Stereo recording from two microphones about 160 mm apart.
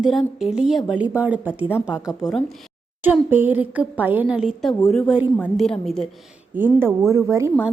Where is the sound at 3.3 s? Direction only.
10° right (ahead or behind).